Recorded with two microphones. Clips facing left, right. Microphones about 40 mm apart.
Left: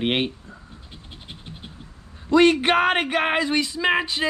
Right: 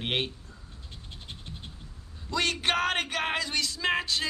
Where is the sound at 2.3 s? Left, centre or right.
Left.